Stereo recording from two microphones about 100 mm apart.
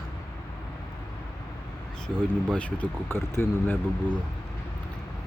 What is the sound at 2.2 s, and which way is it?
Speech, 10° left (ahead or behind).